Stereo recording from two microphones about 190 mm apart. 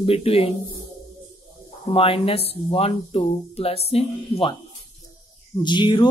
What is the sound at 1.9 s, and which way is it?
Speech, 30° left (ahead or behind).